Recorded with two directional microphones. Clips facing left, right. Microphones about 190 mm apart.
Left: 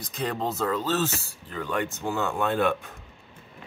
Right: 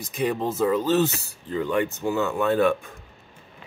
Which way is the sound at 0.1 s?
10° right (ahead or behind).